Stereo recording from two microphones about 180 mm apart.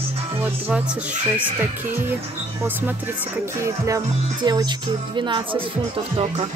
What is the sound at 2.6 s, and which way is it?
Speech, 10° right (ahead or behind).